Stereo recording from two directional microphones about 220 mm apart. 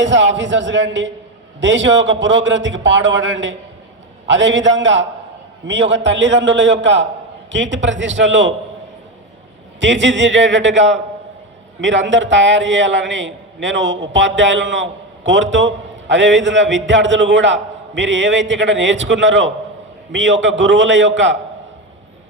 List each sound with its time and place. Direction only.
0.0 s a man's voice: 55° right (ahead or behind)
9.8 s a man's voice: 55° right (ahead or behind)